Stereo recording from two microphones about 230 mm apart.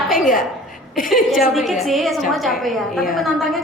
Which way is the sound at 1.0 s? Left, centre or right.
Left.